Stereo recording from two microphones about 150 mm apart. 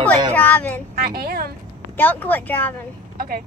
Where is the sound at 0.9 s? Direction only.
90° right.